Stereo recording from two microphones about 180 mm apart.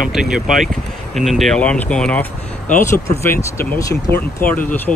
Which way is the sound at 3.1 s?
15° left (ahead or behind).